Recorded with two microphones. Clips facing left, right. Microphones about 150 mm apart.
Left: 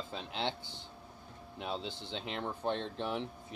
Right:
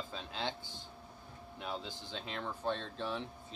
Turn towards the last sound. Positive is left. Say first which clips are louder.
# left 3 dB
turn(degrees=20)  # may be behind; listen again after turning